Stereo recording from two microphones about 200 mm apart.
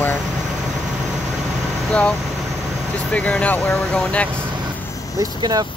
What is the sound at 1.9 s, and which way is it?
Speech, 5° left (ahead or behind).